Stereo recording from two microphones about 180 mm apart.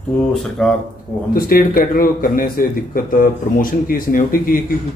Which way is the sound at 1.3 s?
55° left (ahead or behind).